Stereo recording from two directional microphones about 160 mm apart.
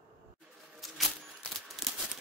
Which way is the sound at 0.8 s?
Centre (ahead or behind).